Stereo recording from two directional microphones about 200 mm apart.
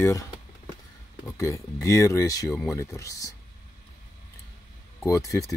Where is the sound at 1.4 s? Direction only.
15° left (ahead or behind).